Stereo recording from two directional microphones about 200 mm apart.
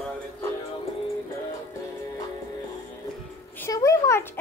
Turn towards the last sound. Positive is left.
turn(degrees=10)  # may be behind; listen again after turning